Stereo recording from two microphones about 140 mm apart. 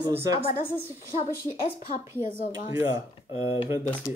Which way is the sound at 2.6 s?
35° left (ahead or behind).